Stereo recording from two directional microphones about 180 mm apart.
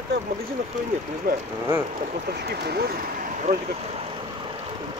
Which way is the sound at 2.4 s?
60° right (ahead or behind).